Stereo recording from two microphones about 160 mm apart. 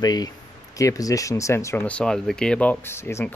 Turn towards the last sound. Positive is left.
turn(degrees=15)  # may be behind; listen again after turning